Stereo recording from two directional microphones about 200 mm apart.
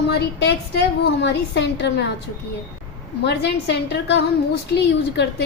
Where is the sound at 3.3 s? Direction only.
55° left (ahead or behind).